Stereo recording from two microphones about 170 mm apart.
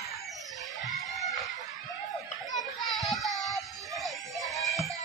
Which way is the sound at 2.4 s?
Centre (ahead or behind).